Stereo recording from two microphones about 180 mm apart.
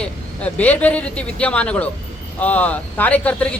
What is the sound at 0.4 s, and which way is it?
Speech, 10° left (ahead or behind).